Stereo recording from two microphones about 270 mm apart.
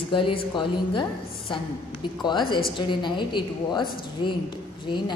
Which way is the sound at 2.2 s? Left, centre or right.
Centre.